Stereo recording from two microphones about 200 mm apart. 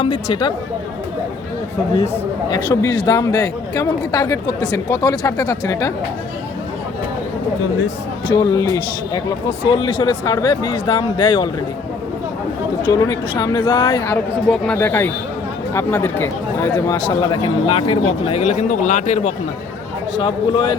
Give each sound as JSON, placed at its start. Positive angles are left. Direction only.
{"t": 0.0, "sound": "speech", "side_deg": 25}
{"t": 2.5, "sound": "speech", "side_deg": 20}
{"t": 8.3, "sound": "speech", "side_deg": 15}
{"t": 12.9, "sound": "speech", "side_deg": 20}
{"t": 14.5, "sound": "speech", "side_deg": 5}
{"t": 20.1, "sound": "speech", "side_deg": 25}